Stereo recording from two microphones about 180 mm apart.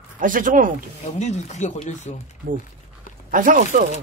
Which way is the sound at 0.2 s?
50° right (ahead or behind).